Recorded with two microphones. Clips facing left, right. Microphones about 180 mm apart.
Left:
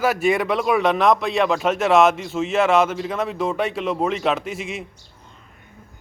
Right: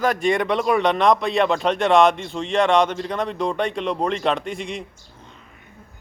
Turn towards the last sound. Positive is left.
turn(degrees=5)  # may be behind; listen again after turning